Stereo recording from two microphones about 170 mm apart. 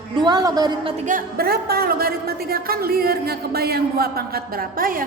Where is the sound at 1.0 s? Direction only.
55° right (ahead or behind).